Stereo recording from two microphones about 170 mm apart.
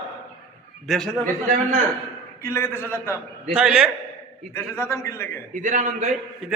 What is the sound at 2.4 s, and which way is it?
Speech, 15° left (ahead or behind).